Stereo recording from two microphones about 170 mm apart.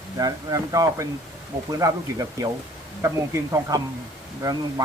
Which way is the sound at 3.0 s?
15° right (ahead or behind).